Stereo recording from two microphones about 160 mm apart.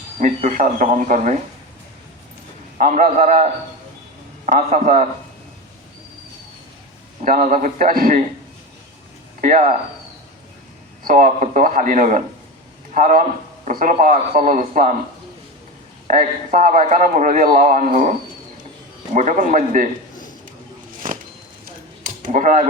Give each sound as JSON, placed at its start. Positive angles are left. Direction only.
{"t": 0.2, "sound": "a man's voice", "side_deg": -50}
{"t": 2.7, "sound": "a man's voice", "side_deg": -50}
{"t": 7.3, "sound": "a man's voice", "side_deg": -60}
{"t": 9.4, "sound": "a man's voice", "side_deg": -55}
{"t": 11.0, "sound": "a man's voice", "side_deg": -55}
{"t": 16.0, "sound": "a man's voice", "side_deg": -55}
{"t": 21.0, "sound": "a sound", "side_deg": -55}